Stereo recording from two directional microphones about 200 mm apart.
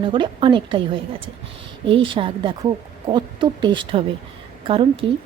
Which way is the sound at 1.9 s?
25° right (ahead or behind).